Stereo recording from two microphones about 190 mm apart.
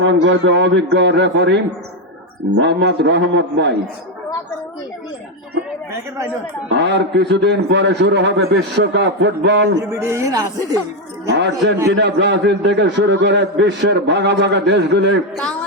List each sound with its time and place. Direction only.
0.0 s a man's voice: 80° right; by 3.8 s 65° right (ahead or behind)
6.7 s a man's voice: 65° right (ahead or behind)
10.0 s speech: 15° right (ahead or behind)
11.3 s a man's voice: 65° right (ahead or behind)